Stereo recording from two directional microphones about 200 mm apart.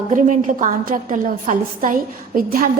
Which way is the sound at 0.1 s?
40° right (ahead or behind).